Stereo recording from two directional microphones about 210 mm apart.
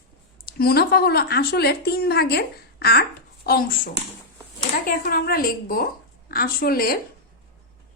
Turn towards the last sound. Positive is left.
turn(degrees=45)  # may be behind; listen again after turning